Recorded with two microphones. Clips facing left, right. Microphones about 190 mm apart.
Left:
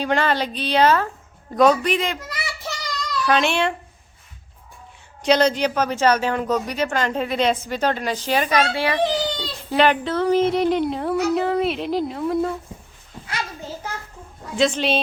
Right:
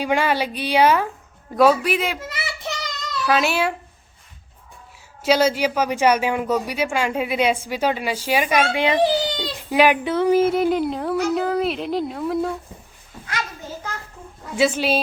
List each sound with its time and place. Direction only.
0.0 s a child's voice: 10° right (ahead or behind)
2.1 s child singing: 25° right (ahead or behind)
3.2 s a child's voice: 5° right (ahead or behind)
5.2 s speech: 5° right (ahead or behind)
8.6 s a child's voice: 20° right (ahead or behind); by 12.5 s centre (ahead or behind)
14.5 s a child's voice: 5° right (ahead or behind)